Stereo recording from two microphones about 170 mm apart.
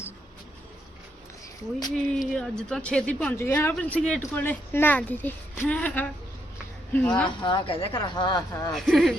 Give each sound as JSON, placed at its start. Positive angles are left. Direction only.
{"t": 2.1, "sound": "speech", "side_deg": 5}
{"t": 7.3, "sound": "speech", "side_deg": 25}
{"t": 8.7, "sound": "a woman's voice", "side_deg": 0}